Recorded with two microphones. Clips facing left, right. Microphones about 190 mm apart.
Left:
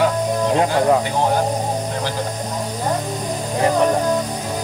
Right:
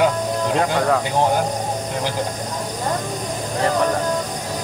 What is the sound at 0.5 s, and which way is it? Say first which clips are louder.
Cricket: left 3 dB; 20° left (ahead or behind).